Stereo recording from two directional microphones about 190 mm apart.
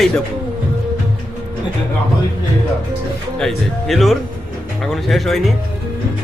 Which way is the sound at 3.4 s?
Centre (ahead or behind).